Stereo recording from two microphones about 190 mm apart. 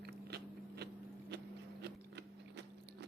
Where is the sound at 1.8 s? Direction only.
60° right (ahead or behind).